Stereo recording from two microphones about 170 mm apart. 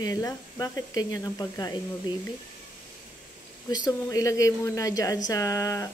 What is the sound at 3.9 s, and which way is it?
Speech, 20° left (ahead or behind).